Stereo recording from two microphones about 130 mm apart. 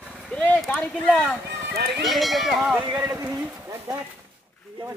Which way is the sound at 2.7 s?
15° right (ahead or behind).